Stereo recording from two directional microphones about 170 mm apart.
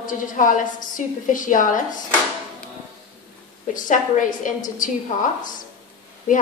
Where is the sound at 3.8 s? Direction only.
50° left (ahead or behind).